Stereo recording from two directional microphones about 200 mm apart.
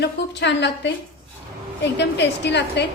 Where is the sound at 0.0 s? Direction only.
60° left (ahead or behind).